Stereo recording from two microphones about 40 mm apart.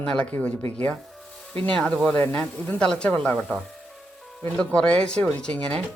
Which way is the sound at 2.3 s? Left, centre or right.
Left.